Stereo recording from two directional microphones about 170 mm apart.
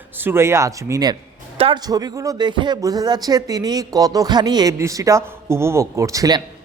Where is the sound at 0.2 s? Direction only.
15° right (ahead or behind).